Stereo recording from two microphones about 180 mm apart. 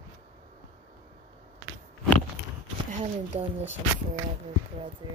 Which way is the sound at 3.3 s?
35° right (ahead or behind).